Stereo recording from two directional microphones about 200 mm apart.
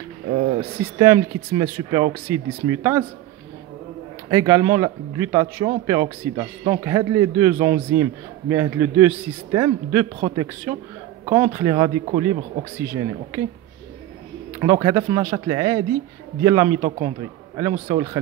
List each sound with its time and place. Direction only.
0.9 s a man's voice: 15° right (ahead or behind)
4.3 s a man's voice: 15° right (ahead or behind)
14.6 s a man's voice: 15° right (ahead or behind)